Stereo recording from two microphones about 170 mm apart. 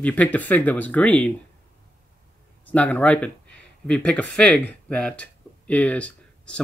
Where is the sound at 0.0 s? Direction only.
10° left (ahead or behind).